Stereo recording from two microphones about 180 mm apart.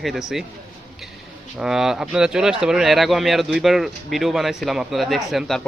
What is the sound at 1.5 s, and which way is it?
Speech, 5° right (ahead or behind).